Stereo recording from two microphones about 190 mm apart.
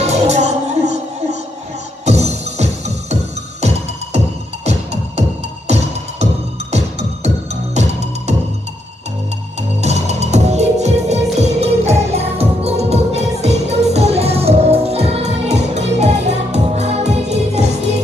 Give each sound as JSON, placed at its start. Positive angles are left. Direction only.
{"t": 0.0, "sound": "music", "side_deg": -35}
{"t": 5.7, "sound": "music", "side_deg": -35}
{"t": 9.6, "sound": "music", "side_deg": -35}